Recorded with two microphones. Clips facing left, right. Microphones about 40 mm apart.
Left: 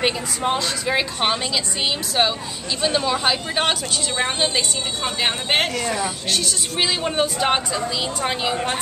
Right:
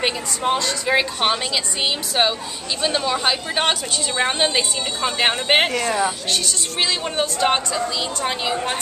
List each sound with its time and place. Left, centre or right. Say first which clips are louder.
0.0 s a woman's voice: even; centre
4.2 s a woman's voice: right 3 dB; centre
6.3 s a woman's voice: even; centre